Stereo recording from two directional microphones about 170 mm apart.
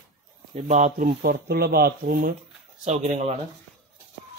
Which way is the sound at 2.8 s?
45° right (ahead or behind).